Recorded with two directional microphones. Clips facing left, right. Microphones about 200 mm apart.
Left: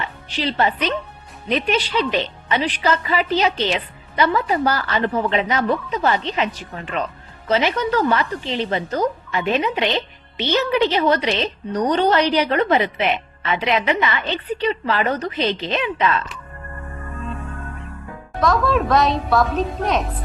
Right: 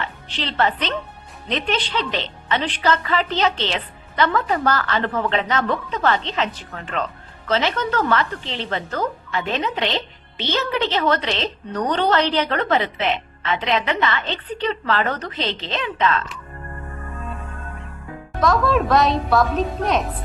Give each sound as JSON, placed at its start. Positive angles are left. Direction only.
{"t": 0.0, "sound": "a woman's voice", "side_deg": 10}
{"t": 18.3, "sound": "a woman's voice", "side_deg": 0}